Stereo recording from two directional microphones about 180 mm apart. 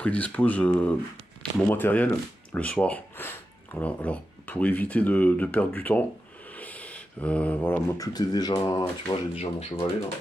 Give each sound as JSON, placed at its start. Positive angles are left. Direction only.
{"t": 0.0, "sound": "speech", "side_deg": 10}
{"t": 9.3, "sound": "speech", "side_deg": 35}